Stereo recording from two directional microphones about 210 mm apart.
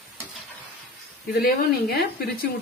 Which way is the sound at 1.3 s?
50° left (ahead or behind).